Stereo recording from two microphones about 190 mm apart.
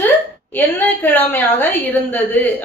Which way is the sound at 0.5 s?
10° left (ahead or behind).